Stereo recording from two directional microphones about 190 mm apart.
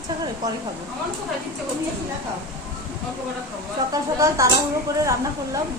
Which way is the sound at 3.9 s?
20° right (ahead or behind).